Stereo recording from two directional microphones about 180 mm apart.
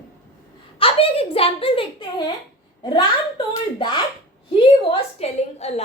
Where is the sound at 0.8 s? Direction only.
30° left (ahead or behind).